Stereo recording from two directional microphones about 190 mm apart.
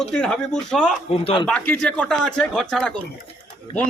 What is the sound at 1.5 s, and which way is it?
A man's voice, 5° left (ahead or behind).